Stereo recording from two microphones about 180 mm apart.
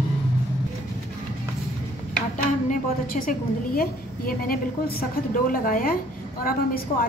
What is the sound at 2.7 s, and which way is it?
A woman's voice, 50° left (ahead or behind).